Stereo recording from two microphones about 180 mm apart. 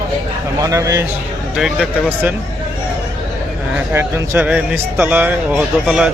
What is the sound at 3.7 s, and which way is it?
A man's voice, 15° right (ahead or behind).